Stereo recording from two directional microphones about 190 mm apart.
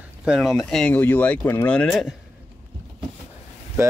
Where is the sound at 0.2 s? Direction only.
5° right (ahead or behind).